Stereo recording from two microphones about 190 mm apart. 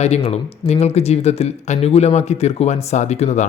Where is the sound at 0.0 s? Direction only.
35° left (ahead or behind).